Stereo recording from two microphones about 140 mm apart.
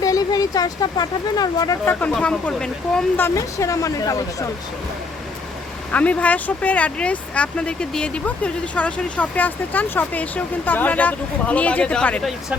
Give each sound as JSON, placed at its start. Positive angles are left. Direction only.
{"t": 0.0, "sound": "speech", "side_deg": 25}
{"t": 1.8, "sound": "speech", "side_deg": 15}
{"t": 3.2, "sound": "speech", "side_deg": 20}
{"t": 5.9, "sound": "speech", "side_deg": 10}